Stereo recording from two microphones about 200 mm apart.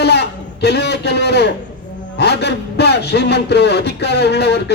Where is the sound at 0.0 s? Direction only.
55° left (ahead or behind).